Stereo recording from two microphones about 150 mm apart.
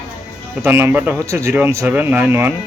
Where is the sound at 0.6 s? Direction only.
15° right (ahead or behind).